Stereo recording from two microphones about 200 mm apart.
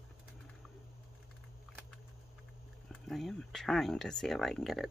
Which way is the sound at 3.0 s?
Centre (ahead or behind).